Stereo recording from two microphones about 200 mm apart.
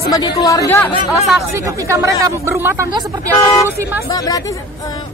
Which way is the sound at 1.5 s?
15° right (ahead or behind).